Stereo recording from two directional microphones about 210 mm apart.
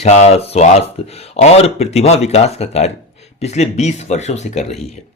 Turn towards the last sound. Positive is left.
turn(degrees=30)  # may be behind; listen again after turning